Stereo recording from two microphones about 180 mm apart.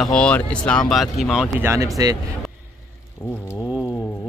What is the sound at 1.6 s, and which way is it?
Speech, 15° right (ahead or behind).